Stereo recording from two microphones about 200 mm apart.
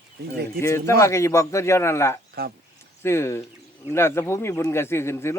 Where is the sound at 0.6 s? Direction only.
15° left (ahead or behind).